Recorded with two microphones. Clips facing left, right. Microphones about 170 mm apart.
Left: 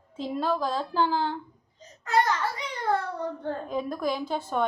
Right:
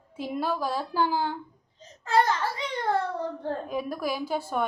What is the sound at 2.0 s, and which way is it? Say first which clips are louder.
Speech: right 1 dB; 30° right (ahead or behind).